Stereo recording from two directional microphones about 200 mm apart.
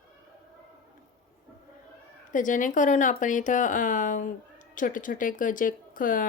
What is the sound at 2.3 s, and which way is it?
Speech, 40° left (ahead or behind).